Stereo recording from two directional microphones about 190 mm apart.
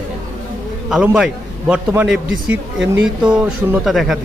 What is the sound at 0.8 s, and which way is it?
A man's voice, 5° right (ahead or behind).